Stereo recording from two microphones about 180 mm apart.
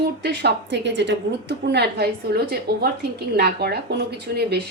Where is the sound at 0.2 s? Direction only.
70° right (ahead or behind).